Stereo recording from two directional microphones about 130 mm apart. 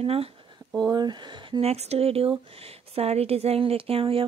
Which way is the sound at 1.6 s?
55° right (ahead or behind).